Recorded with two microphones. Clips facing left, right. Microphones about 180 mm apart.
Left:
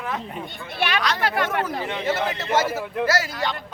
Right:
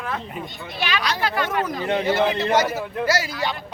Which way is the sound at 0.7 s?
60° left (ahead or behind).